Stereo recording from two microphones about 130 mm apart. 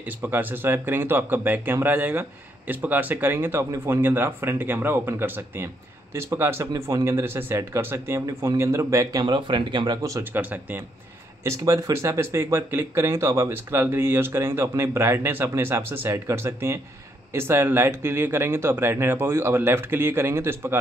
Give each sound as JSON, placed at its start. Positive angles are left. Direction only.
{"t": 0.2, "sound": "speech", "side_deg": -15}
{"t": 9.2, "sound": "speech", "side_deg": -35}